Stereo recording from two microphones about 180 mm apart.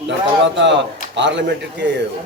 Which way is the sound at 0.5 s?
85° right.